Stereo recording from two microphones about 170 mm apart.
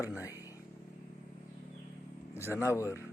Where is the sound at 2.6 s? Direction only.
15° left (ahead or behind).